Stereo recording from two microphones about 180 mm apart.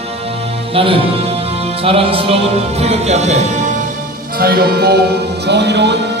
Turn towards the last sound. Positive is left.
turn(degrees=-70)  # may be behind; listen again after turning